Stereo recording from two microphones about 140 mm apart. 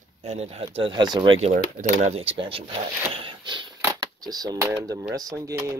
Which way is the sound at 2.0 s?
45° right (ahead or behind).